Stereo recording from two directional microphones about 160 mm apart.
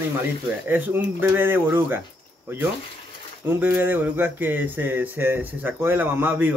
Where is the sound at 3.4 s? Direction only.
10° right (ahead or behind).